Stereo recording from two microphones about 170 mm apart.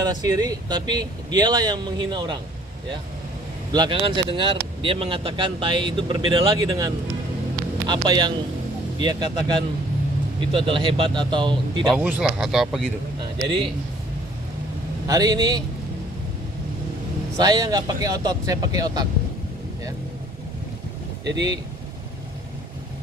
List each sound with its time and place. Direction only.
0.0 s speech: 25° right (ahead or behind)
3.7 s speech: 25° right (ahead or behind)
12.0 s speech: 5° right (ahead or behind)
15.0 s speech: 20° right (ahead or behind)
17.4 s speech: 20° right (ahead or behind)